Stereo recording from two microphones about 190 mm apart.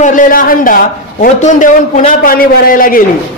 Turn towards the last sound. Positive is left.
turn(degrees=50)  # may be behind; listen again after turning